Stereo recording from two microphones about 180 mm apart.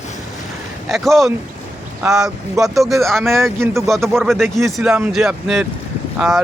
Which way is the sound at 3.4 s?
15° right (ahead or behind).